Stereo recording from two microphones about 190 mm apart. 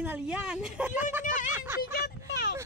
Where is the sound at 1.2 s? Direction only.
45° left (ahead or behind).